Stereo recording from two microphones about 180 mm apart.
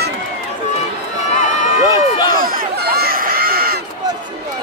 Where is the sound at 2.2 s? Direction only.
55° right (ahead or behind).